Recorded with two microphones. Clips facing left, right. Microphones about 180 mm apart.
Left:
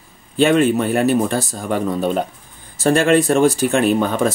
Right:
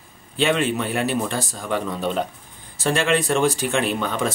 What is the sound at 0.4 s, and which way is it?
A man's voice, 45° left (ahead or behind).